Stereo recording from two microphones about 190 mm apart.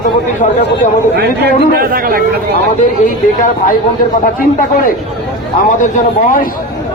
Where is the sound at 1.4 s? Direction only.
50° right (ahead or behind).